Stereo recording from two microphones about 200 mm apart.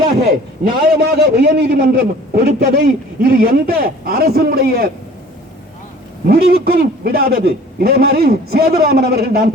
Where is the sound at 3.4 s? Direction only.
45° right (ahead or behind).